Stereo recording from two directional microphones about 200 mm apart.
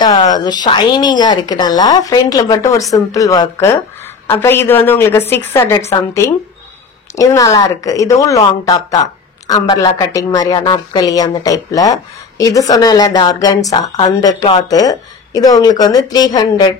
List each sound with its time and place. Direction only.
0.0 s a woman's voice: 20° left (ahead or behind)
7.2 s a woman's voice: 15° left (ahead or behind)